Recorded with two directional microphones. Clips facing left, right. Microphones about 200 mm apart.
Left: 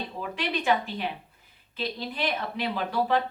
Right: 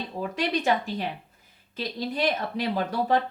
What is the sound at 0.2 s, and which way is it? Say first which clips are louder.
Speech: right 5 dB; 40° right (ahead or behind).